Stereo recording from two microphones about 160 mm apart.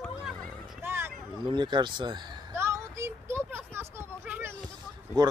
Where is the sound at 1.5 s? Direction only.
30° right (ahead or behind).